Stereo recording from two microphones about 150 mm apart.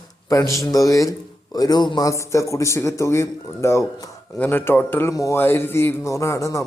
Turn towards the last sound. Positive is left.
turn(degrees=20)  # may be behind; listen again after turning